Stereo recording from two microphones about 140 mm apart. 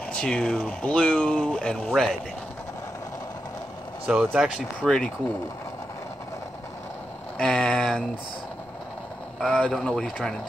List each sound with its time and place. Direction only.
0.1 s speech: 5° left (ahead or behind)
4.1 s speech: 10° right (ahead or behind)
4.8 s speech: 5° left (ahead or behind)
7.3 s speech: 5° left (ahead or behind)
9.4 s speech: 5° left (ahead or behind)